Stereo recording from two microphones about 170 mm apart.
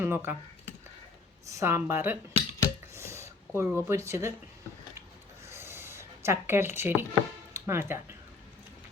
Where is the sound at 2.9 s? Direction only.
15° right (ahead or behind).